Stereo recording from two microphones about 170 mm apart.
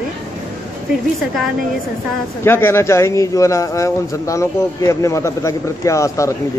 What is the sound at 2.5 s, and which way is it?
A man's voice, 15° left (ahead or behind).